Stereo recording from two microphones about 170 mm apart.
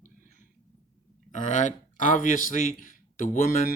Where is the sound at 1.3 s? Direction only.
45° left (ahead or behind).